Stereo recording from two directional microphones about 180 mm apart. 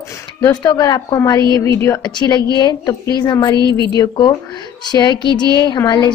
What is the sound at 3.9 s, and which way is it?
A woman's voice, 20° left (ahead or behind).